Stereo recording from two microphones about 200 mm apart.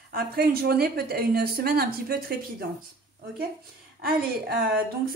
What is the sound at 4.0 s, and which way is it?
Speech, 50° right (ahead or behind).